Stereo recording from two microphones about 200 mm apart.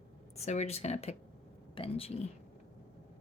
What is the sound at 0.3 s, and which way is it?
A woman's voice, 35° left (ahead or behind).